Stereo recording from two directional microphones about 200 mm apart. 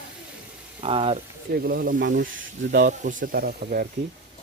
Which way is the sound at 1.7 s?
45° right (ahead or behind).